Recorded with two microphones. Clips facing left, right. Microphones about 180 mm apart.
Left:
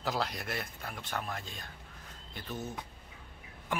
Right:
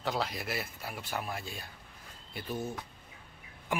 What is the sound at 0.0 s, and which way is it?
Speech, centre (ahead or behind).